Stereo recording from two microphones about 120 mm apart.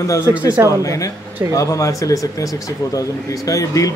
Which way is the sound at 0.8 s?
25° left (ahead or behind).